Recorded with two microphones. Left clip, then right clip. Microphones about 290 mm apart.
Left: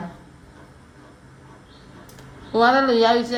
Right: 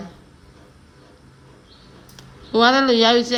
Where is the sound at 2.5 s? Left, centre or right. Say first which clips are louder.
Right 1 dB; centre.